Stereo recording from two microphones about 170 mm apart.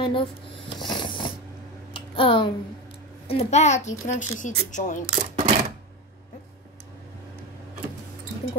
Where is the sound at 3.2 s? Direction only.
40° left (ahead or behind).